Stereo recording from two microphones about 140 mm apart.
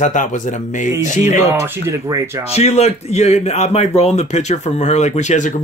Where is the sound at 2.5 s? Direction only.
50° left (ahead or behind).